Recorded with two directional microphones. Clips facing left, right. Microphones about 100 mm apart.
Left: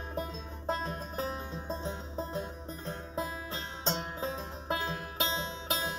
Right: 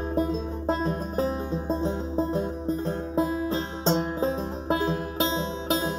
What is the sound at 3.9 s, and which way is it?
Music, 40° right (ahead or behind).